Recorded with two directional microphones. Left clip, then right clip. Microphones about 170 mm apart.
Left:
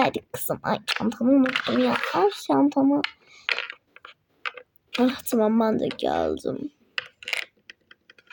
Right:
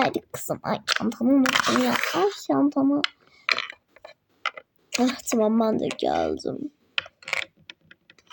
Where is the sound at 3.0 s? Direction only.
5° left (ahead or behind).